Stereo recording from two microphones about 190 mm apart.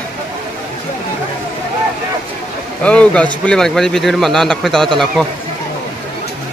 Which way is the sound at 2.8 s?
5° left (ahead or behind).